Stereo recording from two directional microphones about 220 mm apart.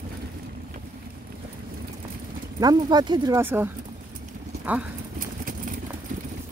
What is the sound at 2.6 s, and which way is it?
Speech, 20° right (ahead or behind).